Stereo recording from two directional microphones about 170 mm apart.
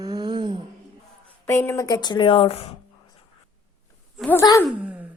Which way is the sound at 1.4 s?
15° left (ahead or behind).